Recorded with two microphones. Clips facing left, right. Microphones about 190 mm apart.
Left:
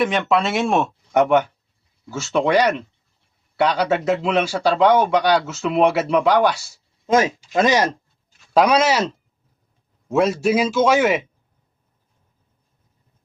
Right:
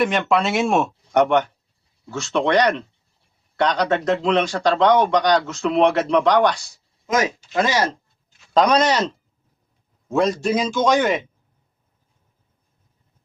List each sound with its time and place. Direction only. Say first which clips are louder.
0.0 s a man's voice: even; centre (ahead or behind)
7.1 s speech: left 3 dB; 30° left (ahead or behind)
8.5 s a man's voice: left 1 dB; 5° left (ahead or behind)